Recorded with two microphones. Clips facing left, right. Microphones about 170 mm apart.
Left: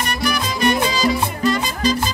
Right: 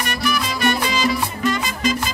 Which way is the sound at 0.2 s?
35° left (ahead or behind).